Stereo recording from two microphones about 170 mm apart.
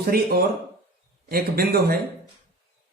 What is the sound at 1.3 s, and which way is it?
Speech, 65° right (ahead or behind).